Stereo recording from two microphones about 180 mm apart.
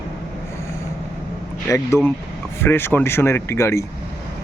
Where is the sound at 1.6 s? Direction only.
15° left (ahead or behind).